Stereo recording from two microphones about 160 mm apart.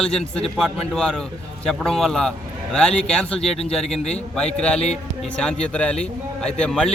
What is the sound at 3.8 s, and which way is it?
Speech, 40° left (ahead or behind).